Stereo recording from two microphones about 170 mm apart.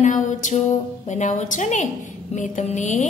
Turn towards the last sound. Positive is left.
turn(degrees=45)  # may be behind; listen again after turning